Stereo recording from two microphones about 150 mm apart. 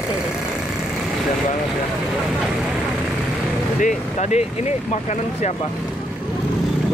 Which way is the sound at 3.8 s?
50° left (ahead or behind).